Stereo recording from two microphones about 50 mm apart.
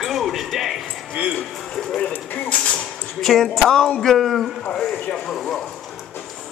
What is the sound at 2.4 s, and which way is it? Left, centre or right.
Speech, centre.